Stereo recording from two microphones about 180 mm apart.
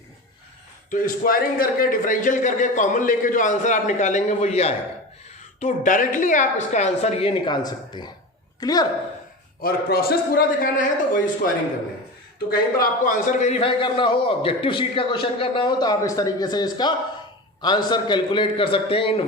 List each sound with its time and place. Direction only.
0.9 s a man's voice: 50° left (ahead or behind); by 8.9 s 20° left (ahead or behind)
9.6 s speech: 55° left (ahead or behind)
12.5 s a man's voice: 55° left (ahead or behind); by 19.2 s 30° left (ahead or behind)